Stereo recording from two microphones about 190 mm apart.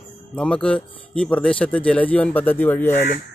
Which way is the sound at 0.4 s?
5° left (ahead or behind).